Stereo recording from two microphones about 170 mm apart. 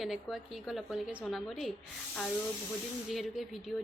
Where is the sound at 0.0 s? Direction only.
Centre (ahead or behind).